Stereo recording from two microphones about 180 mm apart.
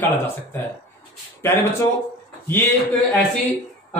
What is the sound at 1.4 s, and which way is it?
Speech, 15° left (ahead or behind).